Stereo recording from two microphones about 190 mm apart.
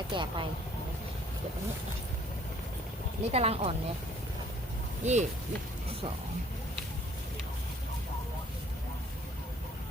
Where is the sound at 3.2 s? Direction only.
30° right (ahead or behind).